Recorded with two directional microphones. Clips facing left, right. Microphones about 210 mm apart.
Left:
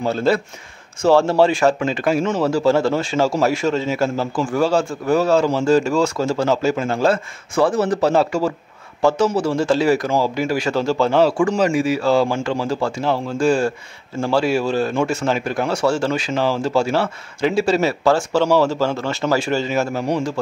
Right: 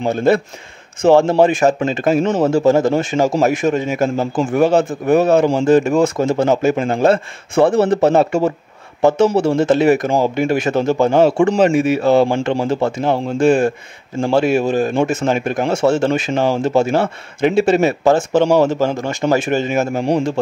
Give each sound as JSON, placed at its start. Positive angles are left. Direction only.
{"t": 0.0, "sound": "speech", "side_deg": -20}
{"t": 10.3, "sound": "speech", "side_deg": -55}
{"t": 10.6, "sound": "speech", "side_deg": -20}
{"t": 20.1, "sound": "a man's voice", "side_deg": -30}